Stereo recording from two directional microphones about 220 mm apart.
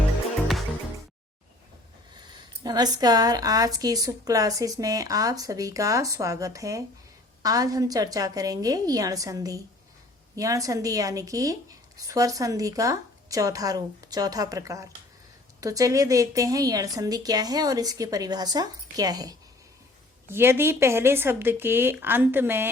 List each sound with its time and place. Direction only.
2.3 s a woman's voice: 20° right (ahead or behind)